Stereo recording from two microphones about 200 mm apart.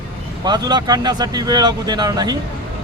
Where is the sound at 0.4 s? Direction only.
20° right (ahead or behind).